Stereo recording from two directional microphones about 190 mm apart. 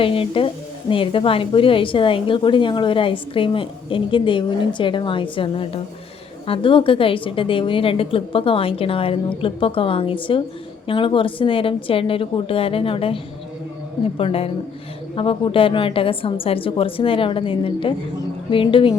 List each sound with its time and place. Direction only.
0.0 s speech: 30° left (ahead or behind)
14.2 s a woman's voice: 30° left (ahead or behind)